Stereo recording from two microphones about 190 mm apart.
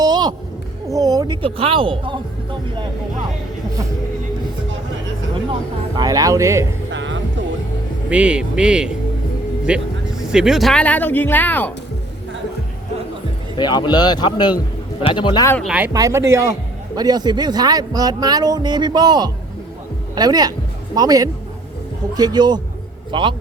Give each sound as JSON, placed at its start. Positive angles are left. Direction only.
{"t": 0.0, "sound": "a sound", "side_deg": -20}
{"t": 0.9, "sound": "speech", "side_deg": -20}
{"t": 6.0, "sound": "speech", "side_deg": -20}
{"t": 6.9, "sound": "music", "side_deg": -75}
{"t": 8.1, "sound": "speech", "side_deg": -5}
{"t": 13.6, "sound": "a man's voice", "side_deg": 25}
{"t": 15.6, "sound": "speech", "side_deg": -5}
{"t": 15.9, "sound": "speech", "side_deg": -15}